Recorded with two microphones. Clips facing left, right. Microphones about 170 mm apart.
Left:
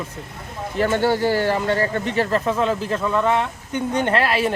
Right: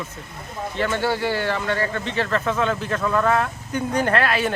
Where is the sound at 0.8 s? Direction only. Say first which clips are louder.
Left 4 dB; 40° left (ahead or behind).